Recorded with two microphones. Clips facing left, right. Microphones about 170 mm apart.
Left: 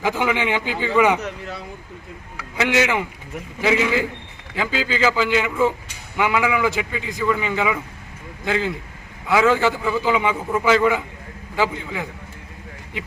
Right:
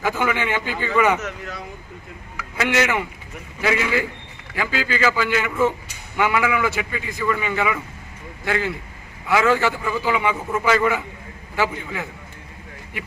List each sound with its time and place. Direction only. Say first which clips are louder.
0.0 s a man's voice: left 1 dB; 15° left (ahead or behind)
2.6 s a man's voice: left 1 dB; 15° left (ahead or behind)